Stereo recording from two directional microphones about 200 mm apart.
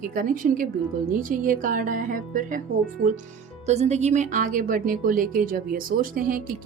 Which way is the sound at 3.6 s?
35° right (ahead or behind).